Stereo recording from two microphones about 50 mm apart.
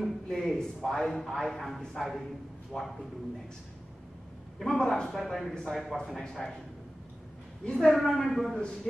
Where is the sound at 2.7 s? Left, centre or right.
Centre.